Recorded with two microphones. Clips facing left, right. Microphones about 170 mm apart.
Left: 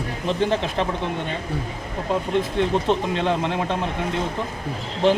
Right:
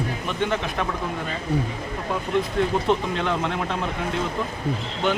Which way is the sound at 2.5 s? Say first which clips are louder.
Left 1 dB; 25° left (ahead or behind).